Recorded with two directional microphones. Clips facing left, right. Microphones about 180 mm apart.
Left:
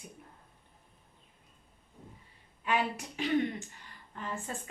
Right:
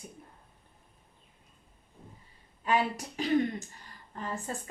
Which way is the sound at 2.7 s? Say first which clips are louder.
Right 3 dB; 40° right (ahead or behind).